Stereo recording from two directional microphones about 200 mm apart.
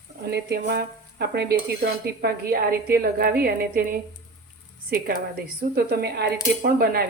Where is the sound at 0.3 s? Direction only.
55° right (ahead or behind).